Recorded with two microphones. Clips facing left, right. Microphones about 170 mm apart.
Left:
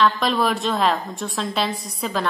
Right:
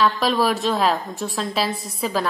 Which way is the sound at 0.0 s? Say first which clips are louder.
Even; 5° right (ahead or behind).